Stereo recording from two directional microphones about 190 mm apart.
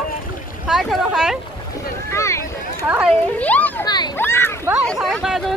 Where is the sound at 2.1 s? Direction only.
15° left (ahead or behind).